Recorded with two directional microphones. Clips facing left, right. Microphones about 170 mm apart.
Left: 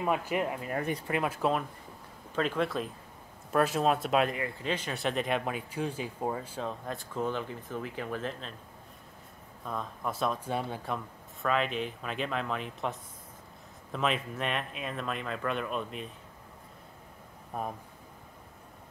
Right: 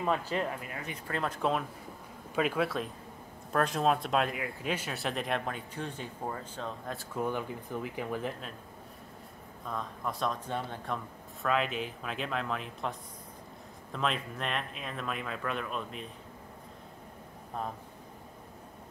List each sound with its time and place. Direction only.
0.0 s speech: 10° left (ahead or behind)
0.7 s speech: 50° left (ahead or behind)
1.0 s speech: 10° left (ahead or behind)
2.3 s speech: 10° right (ahead or behind)
7.2 s speech: 10° right (ahead or behind)
9.7 s speech: 5° left (ahead or behind)
11.4 s speech: centre (ahead or behind)
13.9 s speech: centre (ahead or behind)